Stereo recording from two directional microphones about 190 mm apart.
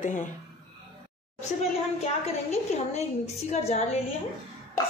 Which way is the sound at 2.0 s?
35° left (ahead or behind).